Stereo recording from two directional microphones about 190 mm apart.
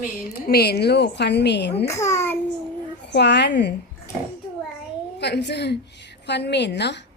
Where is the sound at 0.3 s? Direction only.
55° left (ahead or behind).